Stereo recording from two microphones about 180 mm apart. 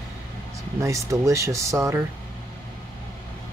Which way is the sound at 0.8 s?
15° right (ahead or behind).